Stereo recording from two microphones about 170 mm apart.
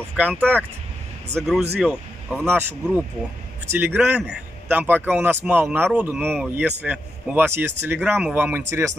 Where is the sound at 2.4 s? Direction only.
15° right (ahead or behind).